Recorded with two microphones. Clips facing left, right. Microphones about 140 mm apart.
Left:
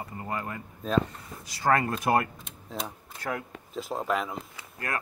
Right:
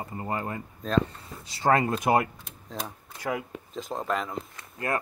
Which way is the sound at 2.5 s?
Centre (ahead or behind).